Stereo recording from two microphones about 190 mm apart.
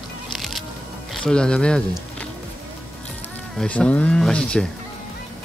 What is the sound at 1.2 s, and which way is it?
Speech, 5° left (ahead or behind).